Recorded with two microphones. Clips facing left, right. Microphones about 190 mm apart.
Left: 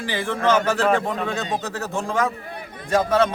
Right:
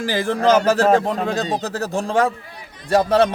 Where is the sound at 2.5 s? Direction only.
55° left (ahead or behind).